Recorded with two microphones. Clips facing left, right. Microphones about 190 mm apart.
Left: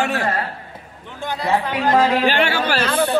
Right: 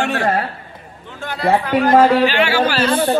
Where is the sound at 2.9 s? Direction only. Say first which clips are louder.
Right 2 dB; 30° right (ahead or behind).